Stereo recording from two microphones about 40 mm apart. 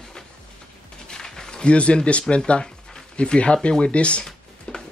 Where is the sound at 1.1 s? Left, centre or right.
Centre.